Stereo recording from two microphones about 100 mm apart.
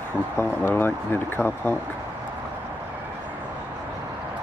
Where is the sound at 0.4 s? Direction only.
25° left (ahead or behind).